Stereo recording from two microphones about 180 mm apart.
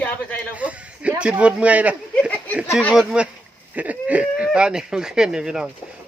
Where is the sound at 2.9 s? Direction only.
5° right (ahead or behind).